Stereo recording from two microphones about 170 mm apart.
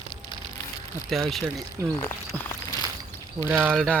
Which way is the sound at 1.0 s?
Centre (ahead or behind).